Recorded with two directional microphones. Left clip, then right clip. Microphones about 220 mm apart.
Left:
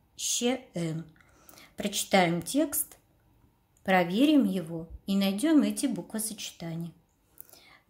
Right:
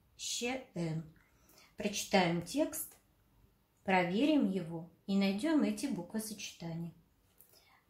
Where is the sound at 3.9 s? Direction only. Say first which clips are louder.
Left 7 dB; 40° left (ahead or behind).